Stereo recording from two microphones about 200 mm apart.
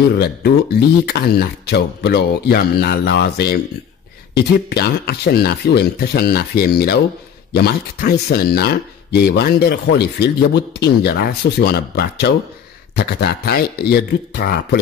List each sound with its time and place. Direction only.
0.2 s speech: 55° left (ahead or behind)